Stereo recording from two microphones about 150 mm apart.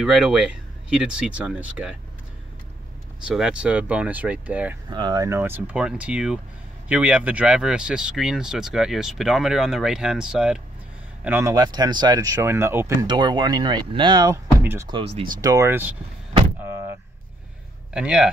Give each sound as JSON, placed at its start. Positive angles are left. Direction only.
{"t": 0.0, "sound": "speech", "side_deg": -5}
{"t": 3.3, "sound": "speech", "side_deg": -5}
{"t": 4.8, "sound": "speech", "side_deg": -30}
{"t": 11.5, "sound": "speech", "side_deg": -25}
{"t": 13.0, "sound": "speech", "side_deg": -30}
{"t": 14.6, "sound": "speech", "side_deg": -15}
{"t": 14.9, "sound": "speech", "side_deg": -40}
{"t": 15.4, "sound": "speech", "side_deg": -20}
{"t": 16.6, "sound": "door", "side_deg": -15}
{"t": 17.9, "sound": "speech", "side_deg": -5}